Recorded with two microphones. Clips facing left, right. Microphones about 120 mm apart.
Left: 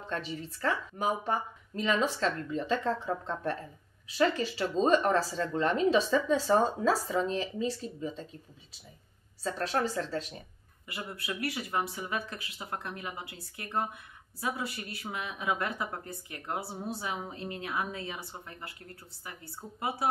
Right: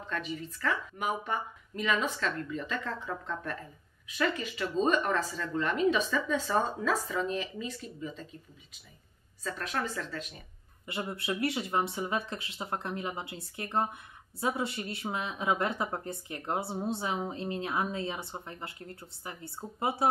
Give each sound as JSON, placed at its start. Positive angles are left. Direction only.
{"t": 0.1, "sound": "speech", "side_deg": 30}
{"t": 9.4, "sound": "speech", "side_deg": 30}
{"t": 10.9, "sound": "speech", "side_deg": -25}